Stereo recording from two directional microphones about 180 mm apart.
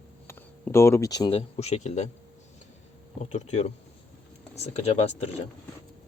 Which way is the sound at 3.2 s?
40° left (ahead or behind).